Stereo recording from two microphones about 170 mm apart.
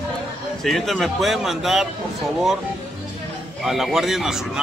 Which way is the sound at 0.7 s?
Centre (ahead or behind).